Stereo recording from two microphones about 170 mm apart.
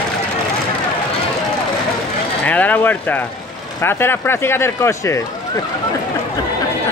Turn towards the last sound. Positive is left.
turn(degrees=15)  # may be behind; listen again after turning